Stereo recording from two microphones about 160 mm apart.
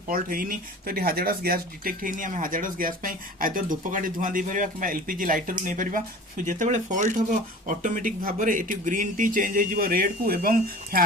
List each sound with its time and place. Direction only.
0.1 s speech: 60° right (ahead or behind)